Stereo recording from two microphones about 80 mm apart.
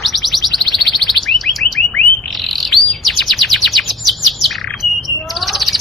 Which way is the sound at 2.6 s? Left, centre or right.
Centre.